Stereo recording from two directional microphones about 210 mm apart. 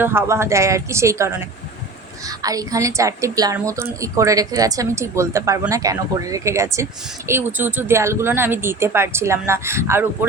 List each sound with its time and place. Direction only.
0.0 s a woman's voice: 10° right (ahead or behind)